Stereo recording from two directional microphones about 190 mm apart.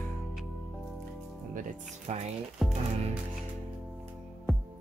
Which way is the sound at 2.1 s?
35° right (ahead or behind).